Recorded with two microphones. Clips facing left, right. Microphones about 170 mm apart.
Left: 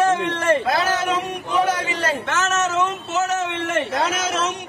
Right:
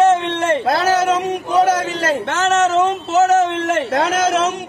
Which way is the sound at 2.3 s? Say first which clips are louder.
Right 8 dB; 35° right (ahead or behind).